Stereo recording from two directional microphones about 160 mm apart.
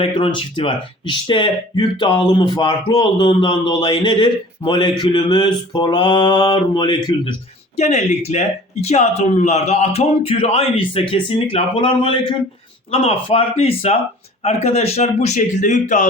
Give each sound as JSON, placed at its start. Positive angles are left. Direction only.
{"t": 0.0, "sound": "speech", "side_deg": 30}
{"t": 7.8, "sound": "speech", "side_deg": 45}